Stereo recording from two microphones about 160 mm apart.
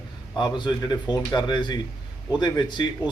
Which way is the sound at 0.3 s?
30° left (ahead or behind).